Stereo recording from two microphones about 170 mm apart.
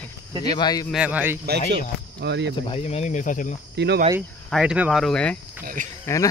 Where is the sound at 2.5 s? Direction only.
35° left (ahead or behind).